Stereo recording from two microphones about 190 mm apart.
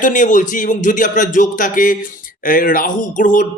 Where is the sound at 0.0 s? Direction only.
45° left (ahead or behind).